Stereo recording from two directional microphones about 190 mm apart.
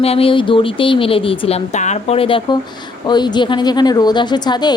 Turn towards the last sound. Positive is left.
turn(degrees=20)  # may be behind; listen again after turning